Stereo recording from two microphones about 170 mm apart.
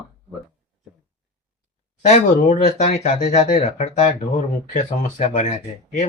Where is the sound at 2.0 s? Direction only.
45° left (ahead or behind).